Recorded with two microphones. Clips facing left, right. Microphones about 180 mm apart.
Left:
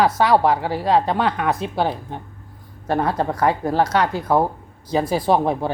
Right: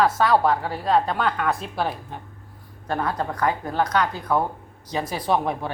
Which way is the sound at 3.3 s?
35° left (ahead or behind).